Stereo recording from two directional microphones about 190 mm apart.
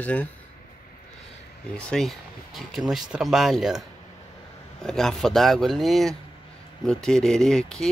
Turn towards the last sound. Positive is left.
turn(degrees=5)  # may be behind; listen again after turning